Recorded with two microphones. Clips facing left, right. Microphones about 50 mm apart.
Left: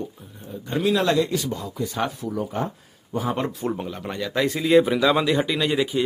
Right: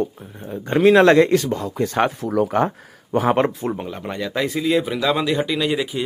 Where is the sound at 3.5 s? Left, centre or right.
Right.